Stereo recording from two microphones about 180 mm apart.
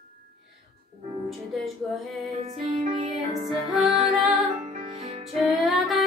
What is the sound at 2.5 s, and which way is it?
Music, 30° right (ahead or behind).